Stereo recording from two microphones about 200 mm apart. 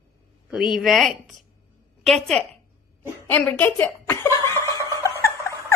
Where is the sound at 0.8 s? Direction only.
Centre (ahead or behind).